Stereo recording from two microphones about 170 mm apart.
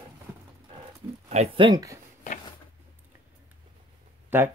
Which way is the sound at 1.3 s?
40° right (ahead or behind).